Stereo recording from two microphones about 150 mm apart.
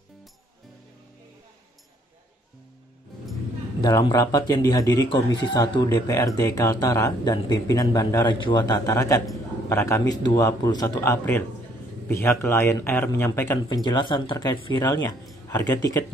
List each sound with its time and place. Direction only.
3.8 s a man's voice: 25° left (ahead or behind)
11.0 s a man's voice: 15° left (ahead or behind)
13.8 s a man's voice: 30° left (ahead or behind)